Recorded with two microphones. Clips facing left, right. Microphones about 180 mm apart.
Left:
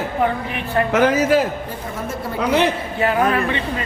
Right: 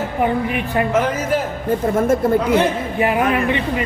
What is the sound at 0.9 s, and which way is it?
Speech, 80° left.